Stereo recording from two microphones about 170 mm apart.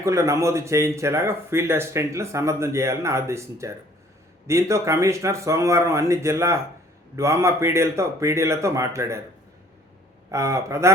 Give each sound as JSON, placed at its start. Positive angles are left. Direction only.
{"t": 0.0, "sound": "speech", "side_deg": -20}
{"t": 10.3, "sound": "speech", "side_deg": -15}